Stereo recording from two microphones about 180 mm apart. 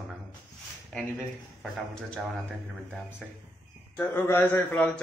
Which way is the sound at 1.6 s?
Centre (ahead or behind).